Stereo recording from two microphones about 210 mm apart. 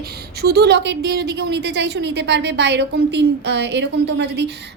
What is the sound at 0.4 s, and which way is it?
A woman's voice, 50° right (ahead or behind).